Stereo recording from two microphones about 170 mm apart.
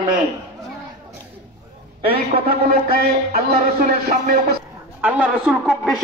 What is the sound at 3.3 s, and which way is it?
Speech, 65° right (ahead or behind).